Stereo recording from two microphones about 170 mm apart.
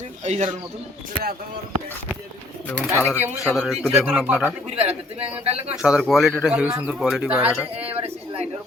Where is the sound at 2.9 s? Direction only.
15° left (ahead or behind).